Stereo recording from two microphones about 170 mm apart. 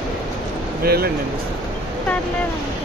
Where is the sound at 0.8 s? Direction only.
65° right (ahead or behind).